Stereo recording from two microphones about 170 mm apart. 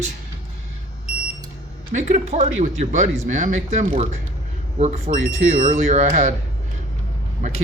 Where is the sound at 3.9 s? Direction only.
40° right (ahead or behind).